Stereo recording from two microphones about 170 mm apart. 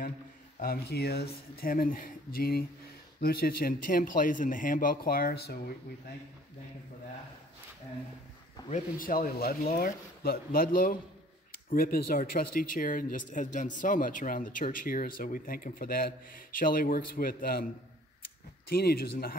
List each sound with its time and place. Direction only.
0.6 s speech: 65° left (ahead or behind)
8.6 s speech: 50° left (ahead or behind)
18.7 s speech: 65° left (ahead or behind)